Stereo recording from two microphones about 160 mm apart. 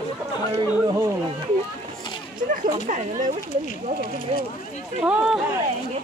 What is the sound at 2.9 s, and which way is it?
Speech, 50° right (ahead or behind).